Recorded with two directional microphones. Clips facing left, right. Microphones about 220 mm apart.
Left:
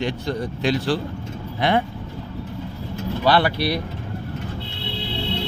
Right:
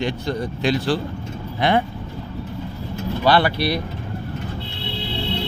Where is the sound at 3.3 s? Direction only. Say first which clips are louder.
Right 1 dB; 5° left (ahead or behind).